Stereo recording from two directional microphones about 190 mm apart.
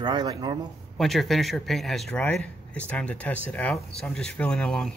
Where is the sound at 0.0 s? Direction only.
25° right (ahead or behind).